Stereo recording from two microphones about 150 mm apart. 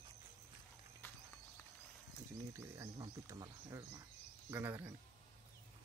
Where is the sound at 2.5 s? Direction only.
20° right (ahead or behind).